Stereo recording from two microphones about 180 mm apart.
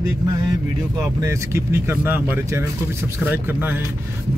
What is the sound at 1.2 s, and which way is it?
A man's voice, 15° right (ahead or behind).